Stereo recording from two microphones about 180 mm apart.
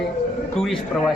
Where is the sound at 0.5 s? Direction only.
Centre (ahead or behind).